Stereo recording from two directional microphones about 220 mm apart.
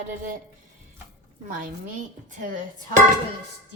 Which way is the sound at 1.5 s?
40° right (ahead or behind).